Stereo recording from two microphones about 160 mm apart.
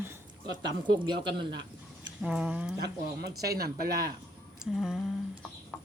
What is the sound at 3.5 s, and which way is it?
Speech, 70° right (ahead or behind).